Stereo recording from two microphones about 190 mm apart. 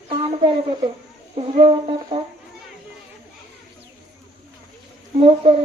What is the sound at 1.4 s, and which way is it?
Speech, 25° right (ahead or behind).